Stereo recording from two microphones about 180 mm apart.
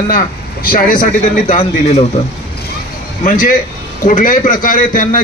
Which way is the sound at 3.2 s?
50° left (ahead or behind).